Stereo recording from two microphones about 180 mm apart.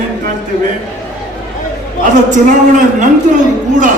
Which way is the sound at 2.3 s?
45° right (ahead or behind).